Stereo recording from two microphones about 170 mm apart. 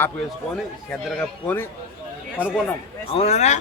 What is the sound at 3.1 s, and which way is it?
Speech, 40° left (ahead or behind).